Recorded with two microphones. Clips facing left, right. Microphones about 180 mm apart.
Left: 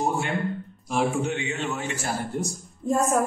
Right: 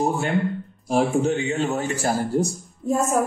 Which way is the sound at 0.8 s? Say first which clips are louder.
Right 5 dB; 40° right (ahead or behind).